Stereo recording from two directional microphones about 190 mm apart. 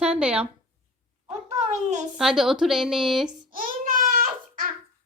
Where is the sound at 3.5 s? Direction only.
50° right (ahead or behind).